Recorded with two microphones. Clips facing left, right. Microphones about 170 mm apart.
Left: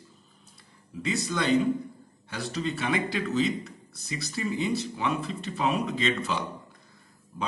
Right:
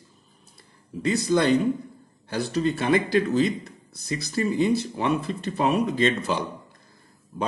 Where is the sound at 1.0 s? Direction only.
40° right (ahead or behind).